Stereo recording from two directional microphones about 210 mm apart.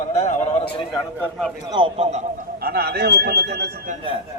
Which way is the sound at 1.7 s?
25° right (ahead or behind).